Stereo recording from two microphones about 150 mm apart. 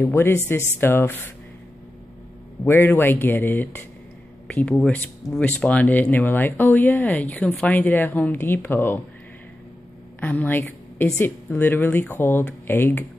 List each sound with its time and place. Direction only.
0.0 s speech: 15° left (ahead or behind)
2.6 s speech: 15° left (ahead or behind)
10.2 s a woman's voice: 10° left (ahead or behind)